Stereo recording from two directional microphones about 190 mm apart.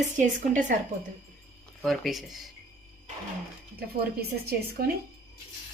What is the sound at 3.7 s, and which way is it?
A woman's voice, 55° right (ahead or behind).